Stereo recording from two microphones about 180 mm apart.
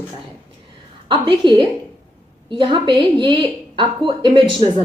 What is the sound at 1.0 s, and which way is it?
Speech, 25° right (ahead or behind).